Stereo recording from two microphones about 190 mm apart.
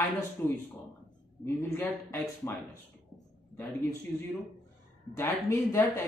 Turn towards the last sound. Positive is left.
turn(degrees=15)  # may be behind; listen again after turning